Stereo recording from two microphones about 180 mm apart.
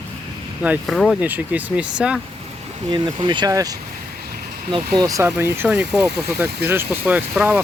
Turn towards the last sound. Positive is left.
turn(degrees=-10)  # may be behind; listen again after turning